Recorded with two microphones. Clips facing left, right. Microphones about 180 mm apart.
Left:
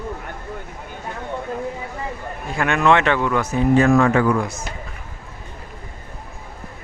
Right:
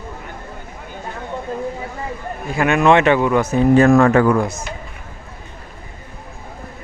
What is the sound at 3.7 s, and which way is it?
Speech, 45° right (ahead or behind).